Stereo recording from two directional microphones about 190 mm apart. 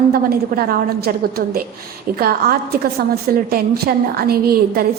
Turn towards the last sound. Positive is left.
turn(degrees=-55)  # may be behind; listen again after turning